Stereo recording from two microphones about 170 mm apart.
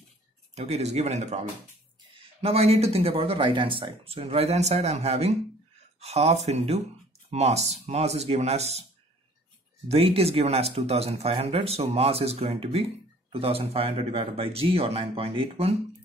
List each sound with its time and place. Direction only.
0.6 s speech: 40° right (ahead or behind)
9.8 s speech: 35° right (ahead or behind)